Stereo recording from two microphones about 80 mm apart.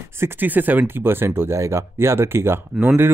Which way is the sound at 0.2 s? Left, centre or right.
Right.